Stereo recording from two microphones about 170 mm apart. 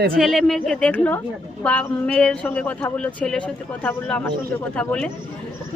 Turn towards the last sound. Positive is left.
turn(degrees=5)  # may be behind; listen again after turning